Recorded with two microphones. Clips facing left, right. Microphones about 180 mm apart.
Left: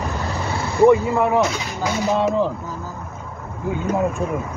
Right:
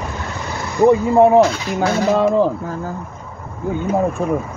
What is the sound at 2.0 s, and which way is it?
Speech, 50° right (ahead or behind).